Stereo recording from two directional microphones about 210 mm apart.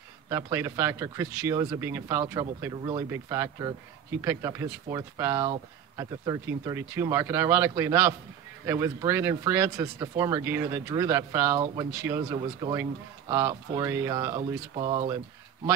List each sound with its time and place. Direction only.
0.3 s speech: 15° right (ahead or behind)
14.8 s speech: 25° right (ahead or behind)